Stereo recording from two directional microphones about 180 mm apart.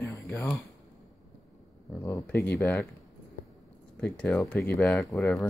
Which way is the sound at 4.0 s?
5° left (ahead or behind).